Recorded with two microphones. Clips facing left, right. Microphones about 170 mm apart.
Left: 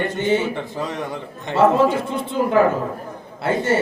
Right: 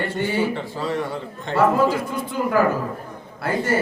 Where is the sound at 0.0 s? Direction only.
20° left (ahead or behind).